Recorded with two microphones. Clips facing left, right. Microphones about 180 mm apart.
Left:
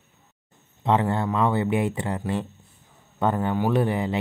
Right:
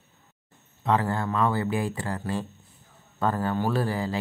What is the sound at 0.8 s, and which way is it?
Speech, 25° left (ahead or behind).